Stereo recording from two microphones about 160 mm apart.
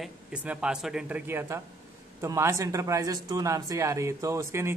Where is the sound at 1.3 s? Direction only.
15° right (ahead or behind).